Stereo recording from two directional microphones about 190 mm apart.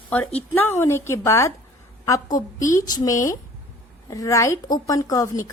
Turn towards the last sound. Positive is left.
turn(degrees=20)  # may be behind; listen again after turning